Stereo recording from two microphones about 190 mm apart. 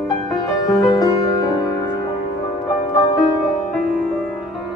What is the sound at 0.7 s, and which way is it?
Music, 20° left (ahead or behind).